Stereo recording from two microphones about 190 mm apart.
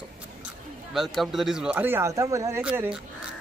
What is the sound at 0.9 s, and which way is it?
Speech, centre (ahead or behind).